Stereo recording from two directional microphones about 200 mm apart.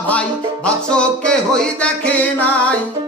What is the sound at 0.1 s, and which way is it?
Music, 5° left (ahead or behind).